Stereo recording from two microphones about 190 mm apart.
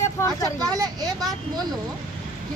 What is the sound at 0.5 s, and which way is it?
Speech, 20° right (ahead or behind).